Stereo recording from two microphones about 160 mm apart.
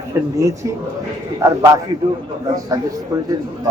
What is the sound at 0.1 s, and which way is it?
A man's voice, 20° right (ahead or behind).